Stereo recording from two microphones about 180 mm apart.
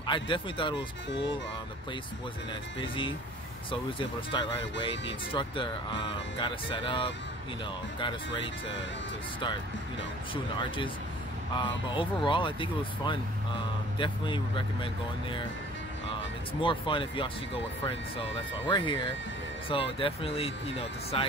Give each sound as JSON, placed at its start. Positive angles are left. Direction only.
{"t": 0.0, "sound": "speech", "side_deg": 25}
{"t": 2.8, "sound": "speech", "side_deg": 30}
{"t": 10.3, "sound": "speech", "side_deg": 25}
{"t": 16.6, "sound": "speech", "side_deg": 30}
{"t": 18.7, "sound": "speech", "side_deg": 25}